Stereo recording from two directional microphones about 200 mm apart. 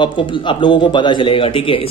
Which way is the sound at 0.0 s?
25° left (ahead or behind).